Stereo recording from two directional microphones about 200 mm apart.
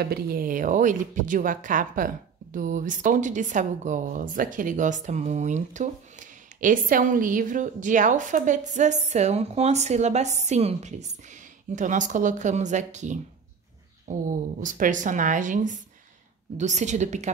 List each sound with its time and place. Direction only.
0.0 s speech: 50° right (ahead or behind)